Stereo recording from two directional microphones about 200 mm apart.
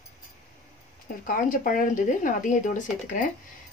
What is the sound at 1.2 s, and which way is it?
A woman's voice, 40° left (ahead or behind).